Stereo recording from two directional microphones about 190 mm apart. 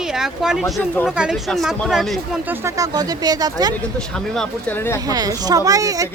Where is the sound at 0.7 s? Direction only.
10° left (ahead or behind).